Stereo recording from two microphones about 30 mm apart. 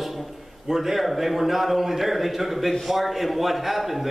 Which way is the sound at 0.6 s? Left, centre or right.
Centre.